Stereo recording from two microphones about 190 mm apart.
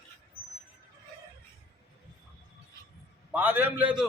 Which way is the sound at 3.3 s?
10° right (ahead or behind).